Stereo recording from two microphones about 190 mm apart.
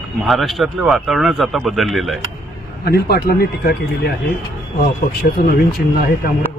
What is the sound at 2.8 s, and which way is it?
Speech, 55° left (ahead or behind).